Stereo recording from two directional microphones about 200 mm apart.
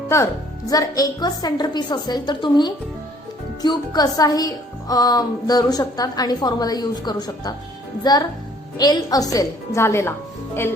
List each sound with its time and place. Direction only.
0.1 s a woman's voice: 15° left (ahead or behind)